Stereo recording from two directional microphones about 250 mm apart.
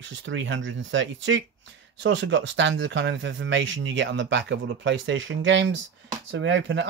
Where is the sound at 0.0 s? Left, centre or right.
Right.